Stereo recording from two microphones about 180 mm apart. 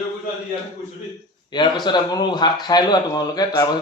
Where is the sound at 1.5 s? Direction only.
25° left (ahead or behind).